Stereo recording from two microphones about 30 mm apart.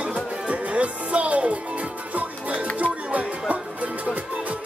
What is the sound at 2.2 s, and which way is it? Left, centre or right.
Music, right.